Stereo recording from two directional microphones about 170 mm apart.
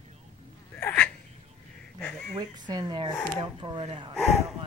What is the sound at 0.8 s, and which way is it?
Sneeze, 10° left (ahead or behind).